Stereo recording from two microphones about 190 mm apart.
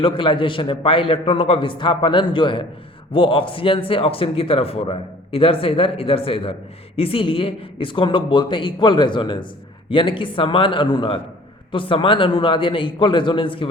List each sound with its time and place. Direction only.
0.0 s speech: 25° left (ahead or behind)